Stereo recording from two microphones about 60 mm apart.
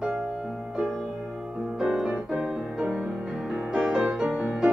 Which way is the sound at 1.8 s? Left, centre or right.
Centre.